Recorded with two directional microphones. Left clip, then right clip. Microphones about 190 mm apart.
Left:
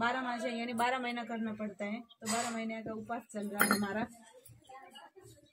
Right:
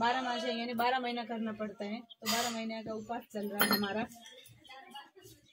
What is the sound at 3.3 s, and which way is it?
Speech, 5° left (ahead or behind).